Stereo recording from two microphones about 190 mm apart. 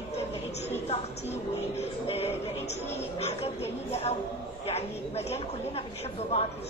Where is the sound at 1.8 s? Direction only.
35° left (ahead or behind).